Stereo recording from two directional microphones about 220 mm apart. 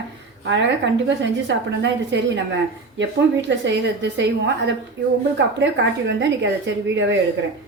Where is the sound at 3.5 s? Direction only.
55° right (ahead or behind).